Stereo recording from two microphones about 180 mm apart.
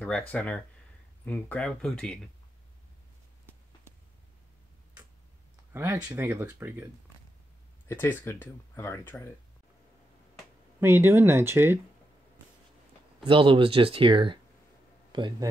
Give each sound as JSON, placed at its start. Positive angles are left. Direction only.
{"t": 0.3, "sound": "speech", "side_deg": 10}
{"t": 5.7, "sound": "speech", "side_deg": -15}
{"t": 7.9, "sound": "speech", "side_deg": 10}
{"t": 10.8, "sound": "speech", "side_deg": -15}
{"t": 13.2, "sound": "speech", "side_deg": -30}